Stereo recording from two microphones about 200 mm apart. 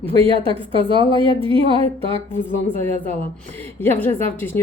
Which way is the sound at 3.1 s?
10° left (ahead or behind).